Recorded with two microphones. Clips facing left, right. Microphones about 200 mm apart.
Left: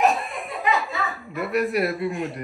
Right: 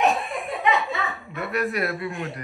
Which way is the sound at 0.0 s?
Centre (ahead or behind).